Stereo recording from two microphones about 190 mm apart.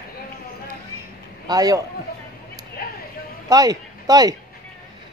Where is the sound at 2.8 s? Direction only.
50° left (ahead or behind).